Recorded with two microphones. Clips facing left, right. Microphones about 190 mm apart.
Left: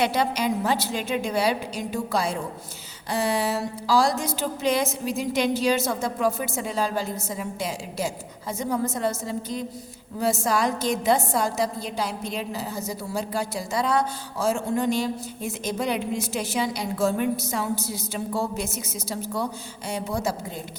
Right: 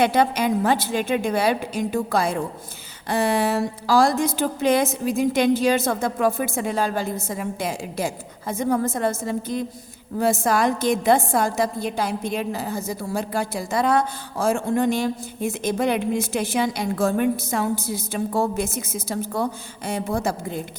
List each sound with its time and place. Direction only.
0.0 s a woman's voice: 55° right (ahead or behind)